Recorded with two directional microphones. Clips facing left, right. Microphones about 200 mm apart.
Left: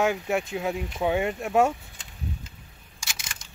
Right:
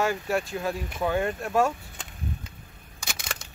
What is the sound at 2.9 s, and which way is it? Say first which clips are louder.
Camera: right 6 dB; 60° right (ahead or behind).